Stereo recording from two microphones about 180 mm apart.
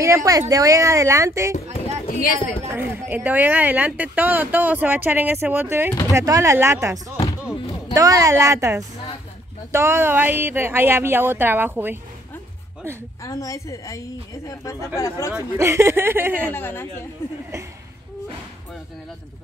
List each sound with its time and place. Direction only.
0.0 s speech: 15° right (ahead or behind)
2.0 s speech: 50° left (ahead or behind)
2.7 s speech: 10° right (ahead or behind)
13.2 s a woman's voice: 20° left (ahead or behind)
15.3 s speech: 15° right (ahead or behind)
16.4 s a woman's voice: 10° left (ahead or behind)